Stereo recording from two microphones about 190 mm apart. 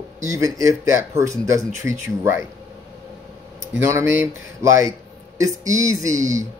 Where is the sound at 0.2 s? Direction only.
15° right (ahead or behind).